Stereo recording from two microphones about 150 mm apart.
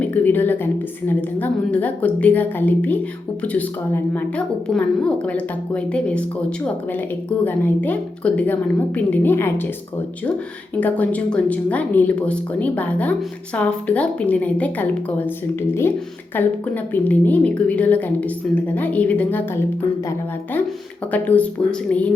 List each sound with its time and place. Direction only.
0.0 s a woman's voice: 10° left (ahead or behind)
7.3 s a woman's voice: 10° left (ahead or behind)
10.8 s a woman's voice: 10° left (ahead or behind)
16.3 s a woman's voice: 10° left (ahead or behind)
21.1 s a woman's voice: 10° left (ahead or behind)